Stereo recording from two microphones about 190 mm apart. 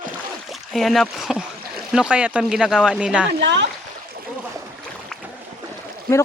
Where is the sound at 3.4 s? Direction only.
70° right (ahead or behind).